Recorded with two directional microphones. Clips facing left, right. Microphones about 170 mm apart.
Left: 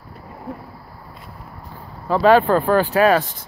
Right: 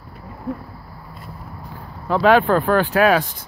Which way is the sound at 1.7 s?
Centre (ahead or behind).